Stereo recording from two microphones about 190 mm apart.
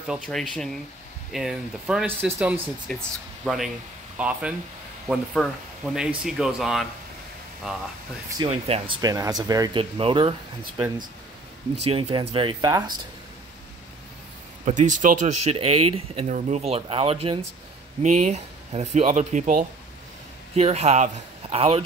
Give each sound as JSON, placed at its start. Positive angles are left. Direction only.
{"t": 0.0, "sound": "speech", "side_deg": 0}
{"t": 2.9, "sound": "speech", "side_deg": 5}
{"t": 8.5, "sound": "speech", "side_deg": -35}
{"t": 11.8, "sound": "speech", "side_deg": -30}
{"t": 14.6, "sound": "speech", "side_deg": -40}